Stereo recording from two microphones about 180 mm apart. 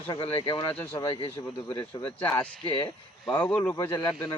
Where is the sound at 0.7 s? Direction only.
10° left (ahead or behind).